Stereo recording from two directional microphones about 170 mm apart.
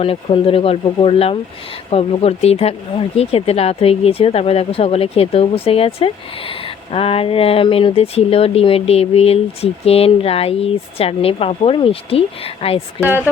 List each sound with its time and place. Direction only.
0.0 s speech: 35° left (ahead or behind)